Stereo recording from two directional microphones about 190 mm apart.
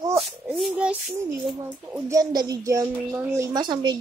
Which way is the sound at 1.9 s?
10° right (ahead or behind).